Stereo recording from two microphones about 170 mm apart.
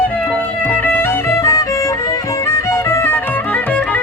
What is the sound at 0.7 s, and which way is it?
Music, 10° left (ahead or behind).